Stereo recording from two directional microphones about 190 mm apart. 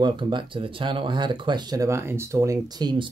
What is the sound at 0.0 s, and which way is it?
Speech, 25° right (ahead or behind).